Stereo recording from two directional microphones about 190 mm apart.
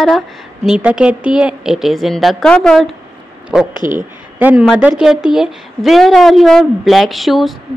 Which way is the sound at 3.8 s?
45° right (ahead or behind).